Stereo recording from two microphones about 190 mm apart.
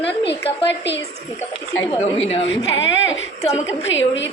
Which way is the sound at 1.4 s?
15° left (ahead or behind).